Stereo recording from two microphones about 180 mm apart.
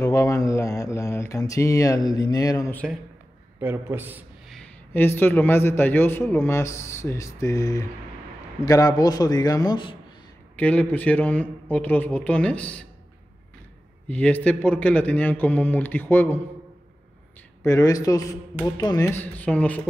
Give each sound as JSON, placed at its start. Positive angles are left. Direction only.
{"t": 0.0, "sound": "speech", "side_deg": 20}
{"t": 3.6, "sound": "a man's voice", "side_deg": -15}
{"t": 4.5, "sound": "a man's voice", "side_deg": 5}
{"t": 10.5, "sound": "a man's voice", "side_deg": 10}
{"t": 14.0, "sound": "a man's voice", "side_deg": 10}
{"t": 17.6, "sound": "a man's voice", "side_deg": 20}
{"t": 19.0, "sound": "a man's voice", "side_deg": 10}